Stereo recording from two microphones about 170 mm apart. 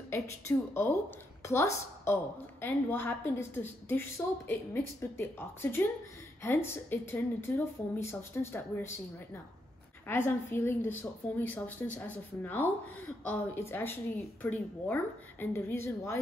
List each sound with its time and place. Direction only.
0.1 s a woman's voice: 15° left (ahead or behind)
10.0 s speech: 15° left (ahead or behind)